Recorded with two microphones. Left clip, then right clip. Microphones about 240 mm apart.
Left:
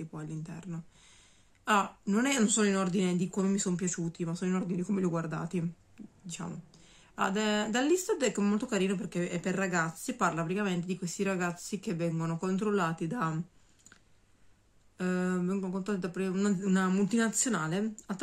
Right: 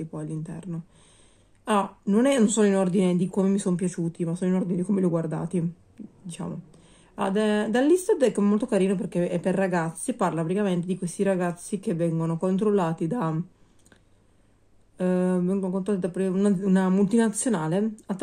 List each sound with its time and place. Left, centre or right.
0.1 s speech: centre
7.8 s speech: left
8.1 s speech: centre
15.0 s speech: centre